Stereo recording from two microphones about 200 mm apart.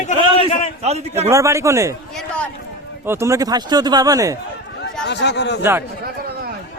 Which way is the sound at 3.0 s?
15° right (ahead or behind).